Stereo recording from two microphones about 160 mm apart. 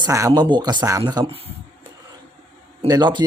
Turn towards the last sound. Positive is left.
turn(degrees=-25)  # may be behind; listen again after turning